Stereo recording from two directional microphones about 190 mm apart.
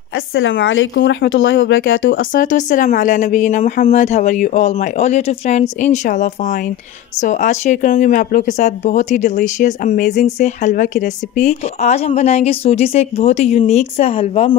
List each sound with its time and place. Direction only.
0.1 s speech: 90° left
2.1 s a woman's voice: 45° left (ahead or behind)